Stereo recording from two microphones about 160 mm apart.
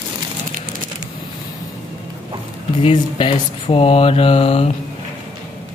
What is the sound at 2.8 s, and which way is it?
Mantra, 35° left (ahead or behind).